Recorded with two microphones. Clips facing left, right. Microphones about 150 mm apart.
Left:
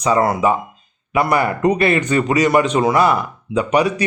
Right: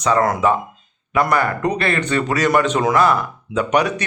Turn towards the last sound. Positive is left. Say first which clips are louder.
# left 2 dB
turn(degrees=5)  # may be behind; listen again after turning